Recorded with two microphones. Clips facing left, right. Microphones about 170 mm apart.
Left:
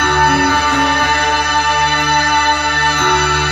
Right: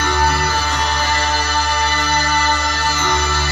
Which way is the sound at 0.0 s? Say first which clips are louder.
Left 5 dB; 60° left (ahead or behind).